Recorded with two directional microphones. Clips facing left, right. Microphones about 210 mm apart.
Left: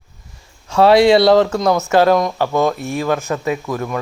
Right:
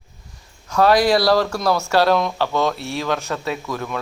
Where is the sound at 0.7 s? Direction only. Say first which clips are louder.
Left 5 dB; 25° left (ahead or behind).